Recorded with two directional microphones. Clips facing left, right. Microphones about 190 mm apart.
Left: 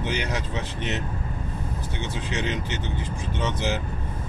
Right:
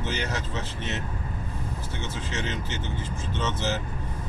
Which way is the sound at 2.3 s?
15° left (ahead or behind).